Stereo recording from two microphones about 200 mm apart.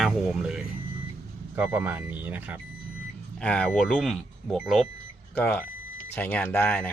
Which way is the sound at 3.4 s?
5° left (ahead or behind).